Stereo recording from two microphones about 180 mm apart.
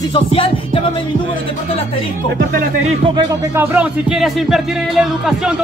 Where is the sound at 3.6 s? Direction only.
10° right (ahead or behind).